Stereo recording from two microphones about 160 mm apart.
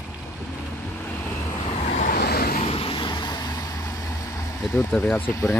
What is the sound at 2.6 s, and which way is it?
Vehicle, 35° left (ahead or behind).